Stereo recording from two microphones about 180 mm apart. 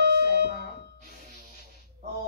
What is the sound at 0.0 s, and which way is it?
Music, 60° right (ahead or behind).